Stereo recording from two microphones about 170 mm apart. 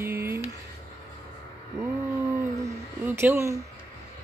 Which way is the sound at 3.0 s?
10° right (ahead or behind).